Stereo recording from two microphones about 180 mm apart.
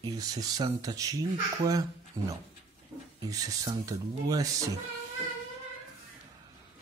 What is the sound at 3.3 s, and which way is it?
Speech, 20° right (ahead or behind).